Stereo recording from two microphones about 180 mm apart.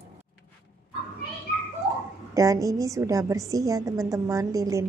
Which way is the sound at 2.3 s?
20° right (ahead or behind).